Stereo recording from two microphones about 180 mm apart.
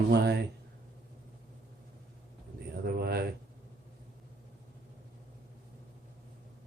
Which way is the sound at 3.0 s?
60° right (ahead or behind).